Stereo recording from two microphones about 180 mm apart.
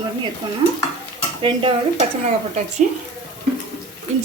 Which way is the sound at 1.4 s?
30° right (ahead or behind).